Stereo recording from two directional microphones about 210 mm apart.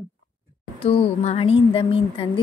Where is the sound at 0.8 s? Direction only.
30° left (ahead or behind).